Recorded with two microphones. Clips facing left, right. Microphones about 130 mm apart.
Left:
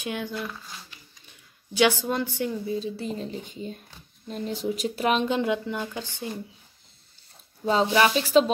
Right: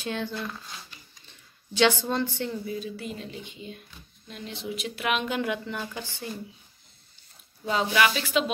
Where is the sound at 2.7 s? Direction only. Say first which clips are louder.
Left 4 dB; 30° left (ahead or behind).